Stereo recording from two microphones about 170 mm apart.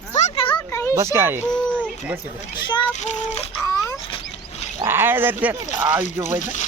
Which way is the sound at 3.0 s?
40° left (ahead or behind).